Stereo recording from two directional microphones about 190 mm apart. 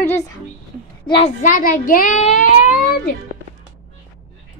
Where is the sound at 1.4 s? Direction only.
45° left (ahead or behind).